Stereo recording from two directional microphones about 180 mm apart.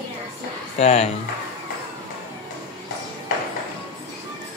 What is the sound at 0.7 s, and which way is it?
Speech, 35° left (ahead or behind).